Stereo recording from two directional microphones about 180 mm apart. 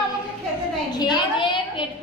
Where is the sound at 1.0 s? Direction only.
25° left (ahead or behind).